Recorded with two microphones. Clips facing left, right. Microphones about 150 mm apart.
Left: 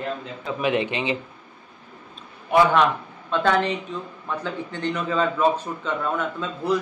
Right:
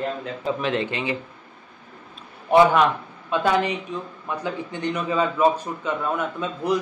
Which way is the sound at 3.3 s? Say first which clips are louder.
Even; 10° right (ahead or behind).